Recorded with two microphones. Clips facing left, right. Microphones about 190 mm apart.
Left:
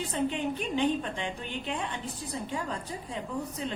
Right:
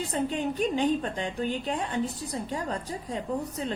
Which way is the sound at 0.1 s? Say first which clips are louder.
Even; 40° right (ahead or behind).